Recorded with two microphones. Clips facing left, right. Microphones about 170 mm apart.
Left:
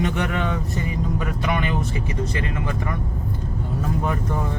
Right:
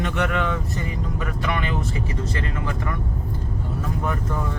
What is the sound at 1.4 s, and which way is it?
Speech, 20° left (ahead or behind).